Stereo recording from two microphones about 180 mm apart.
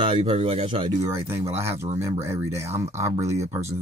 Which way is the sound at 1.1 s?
15° right (ahead or behind).